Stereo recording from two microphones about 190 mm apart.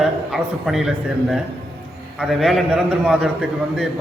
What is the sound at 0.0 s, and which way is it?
A man's voice, centre (ahead or behind).